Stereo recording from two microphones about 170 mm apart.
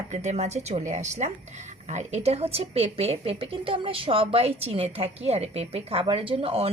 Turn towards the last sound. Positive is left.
turn(degrees=-35)  # may be behind; listen again after turning